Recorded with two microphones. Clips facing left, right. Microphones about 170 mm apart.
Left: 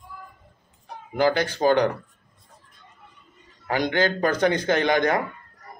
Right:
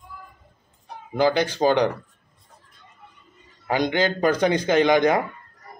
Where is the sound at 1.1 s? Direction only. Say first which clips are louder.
Right 1 dB; 15° right (ahead or behind).